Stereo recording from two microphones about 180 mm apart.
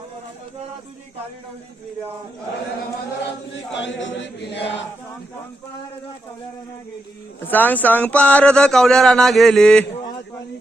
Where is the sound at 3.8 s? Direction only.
90° left.